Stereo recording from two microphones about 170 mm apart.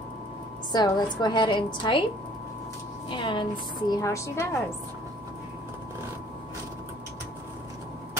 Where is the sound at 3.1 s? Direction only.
30° left (ahead or behind).